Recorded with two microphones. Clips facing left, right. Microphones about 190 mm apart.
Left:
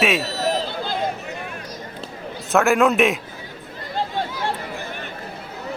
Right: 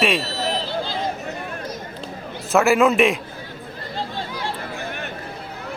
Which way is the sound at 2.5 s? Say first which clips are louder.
Right 1 dB; centre (ahead or behind).